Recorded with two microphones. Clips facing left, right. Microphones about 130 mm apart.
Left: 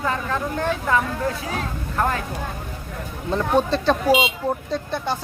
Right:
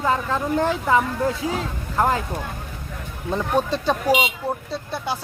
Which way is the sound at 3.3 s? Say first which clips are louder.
Left 2 dB; 10° right (ahead or behind).